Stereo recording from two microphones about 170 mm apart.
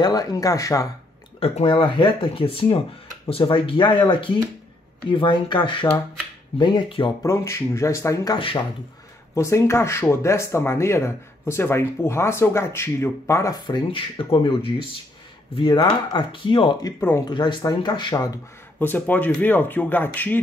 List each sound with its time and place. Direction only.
0.0 s speech: 20° left (ahead or behind)
1.4 s speech: 35° left (ahead or behind)
7.2 s speech: 15° left (ahead or behind)
8.4 s speech: 30° left (ahead or behind)
9.3 s speech: 15° left (ahead or behind)
17.0 s speech: 15° left (ahead or behind)
17.3 s speech: 25° left (ahead or behind); by 20.3 s 10° left (ahead or behind)